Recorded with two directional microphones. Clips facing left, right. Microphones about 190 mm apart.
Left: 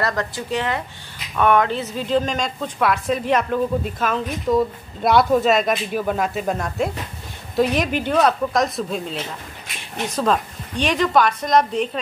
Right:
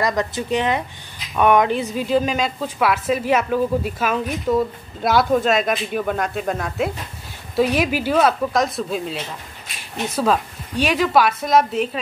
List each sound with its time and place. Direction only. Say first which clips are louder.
0.0 s a woman's voice: right 2 dB; 20° right (ahead or behind)